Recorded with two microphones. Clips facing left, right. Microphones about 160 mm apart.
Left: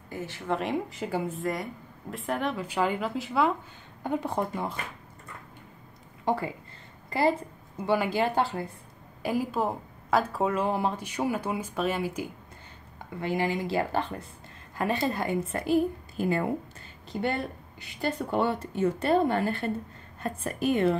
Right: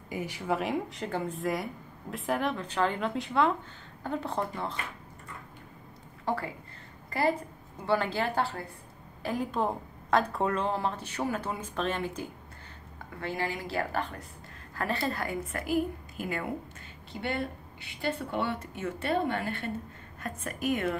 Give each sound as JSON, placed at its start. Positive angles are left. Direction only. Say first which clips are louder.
{"t": 0.1, "sound": "speech", "louder": "even", "side_deg": -10}
{"t": 0.6, "sound": "a woman's voice", "louder": "left 1 dB", "side_deg": 0}
{"t": 4.0, "sound": "a woman's voice", "louder": "left 3 dB", "side_deg": 15}
{"t": 6.2, "sound": "a woman's voice", "louder": "left 4 dB", "side_deg": 20}
{"t": 7.8, "sound": "a woman's voice", "louder": "left 3 dB", "side_deg": 15}
{"t": 9.2, "sound": "a woman's voice", "louder": "left 2 dB", "side_deg": 5}
{"t": 17.1, "sound": "a woman's voice", "louder": "left 3 dB", "side_deg": 45}